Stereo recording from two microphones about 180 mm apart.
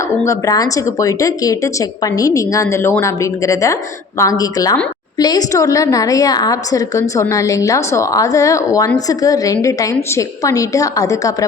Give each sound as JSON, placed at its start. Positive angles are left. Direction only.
{"t": 0.3, "sound": "a woman's voice", "side_deg": 20}